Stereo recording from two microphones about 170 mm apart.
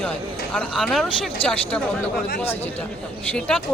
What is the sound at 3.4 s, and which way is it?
Speech, 5° left (ahead or behind).